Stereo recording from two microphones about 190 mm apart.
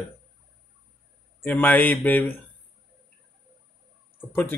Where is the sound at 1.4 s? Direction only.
10° left (ahead or behind).